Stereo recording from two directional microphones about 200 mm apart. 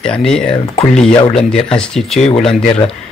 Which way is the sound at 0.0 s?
5° left (ahead or behind).